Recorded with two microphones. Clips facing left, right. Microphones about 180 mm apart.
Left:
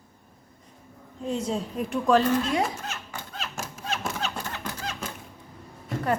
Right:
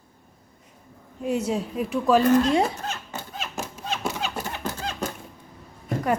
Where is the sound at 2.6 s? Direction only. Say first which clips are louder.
Right 4 dB; 30° right (ahead or behind).